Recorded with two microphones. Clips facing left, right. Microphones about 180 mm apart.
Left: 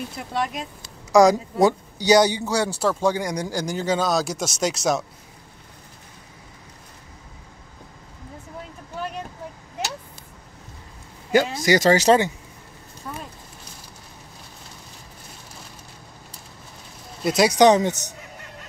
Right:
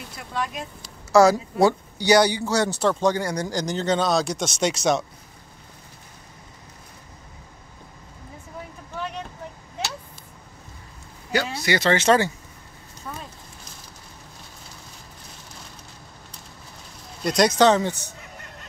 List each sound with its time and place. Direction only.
1.1 s speech: 15° left (ahead or behind)
11.3 s speech: 45° left (ahead or behind)
17.2 s speech: 5° left (ahead or behind)